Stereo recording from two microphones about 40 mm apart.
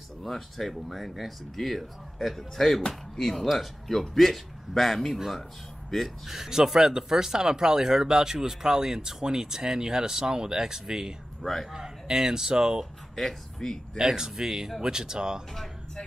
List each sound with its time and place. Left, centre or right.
0.2 s speech: centre
6.2 s speech: centre
11.4 s speech: centre
11.7 s speech: centre
13.1 s speech: centre
13.6 s speech: centre
13.9 s speech: centre